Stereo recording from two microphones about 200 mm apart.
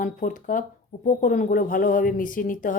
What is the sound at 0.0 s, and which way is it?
A woman's voice, 40° left (ahead or behind).